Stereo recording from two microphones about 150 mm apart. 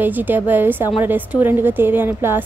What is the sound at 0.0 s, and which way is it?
A woman's voice, 10° right (ahead or behind).